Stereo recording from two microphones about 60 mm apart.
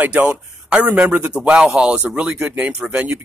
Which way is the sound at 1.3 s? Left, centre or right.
Centre.